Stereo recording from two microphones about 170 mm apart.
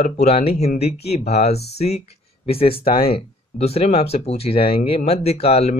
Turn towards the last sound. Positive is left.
turn(degrees=35)  # may be behind; listen again after turning